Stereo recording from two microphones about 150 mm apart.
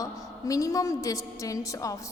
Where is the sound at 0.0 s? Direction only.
20° left (ahead or behind).